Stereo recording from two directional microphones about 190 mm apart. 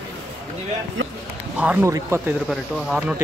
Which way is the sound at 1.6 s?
10° right (ahead or behind).